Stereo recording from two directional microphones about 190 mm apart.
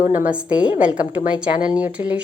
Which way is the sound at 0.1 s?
10° right (ahead or behind).